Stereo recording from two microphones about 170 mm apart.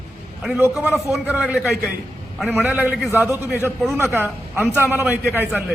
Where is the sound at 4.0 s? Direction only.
10° right (ahead or behind).